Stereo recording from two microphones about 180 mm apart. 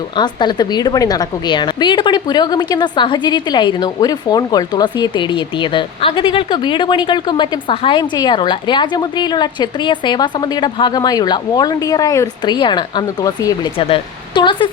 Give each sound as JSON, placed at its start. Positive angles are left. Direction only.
{"t": 0.2, "sound": "a woman's voice", "side_deg": 25}
{"t": 13.7, "sound": "a woman's voice", "side_deg": 30}